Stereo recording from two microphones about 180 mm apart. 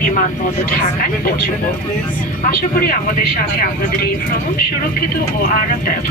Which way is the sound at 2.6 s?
55° left (ahead or behind).